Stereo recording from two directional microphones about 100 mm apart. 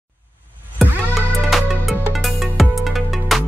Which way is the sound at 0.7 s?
Centre (ahead or behind).